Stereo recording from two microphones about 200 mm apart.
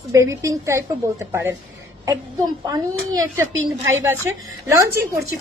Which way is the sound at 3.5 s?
75° right (ahead or behind).